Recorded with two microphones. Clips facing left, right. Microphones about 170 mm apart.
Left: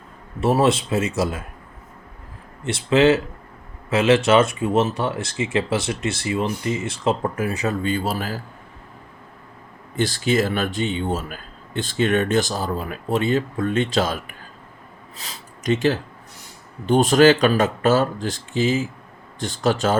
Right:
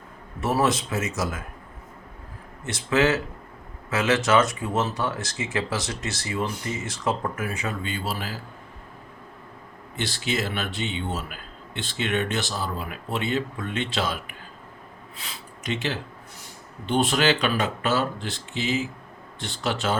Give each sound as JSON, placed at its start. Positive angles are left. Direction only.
{"t": 0.3, "sound": "speech", "side_deg": 25}
{"t": 2.6, "sound": "speech", "side_deg": 30}
{"t": 9.9, "sound": "speech", "side_deg": 45}
{"t": 15.2, "sound": "speech", "side_deg": 40}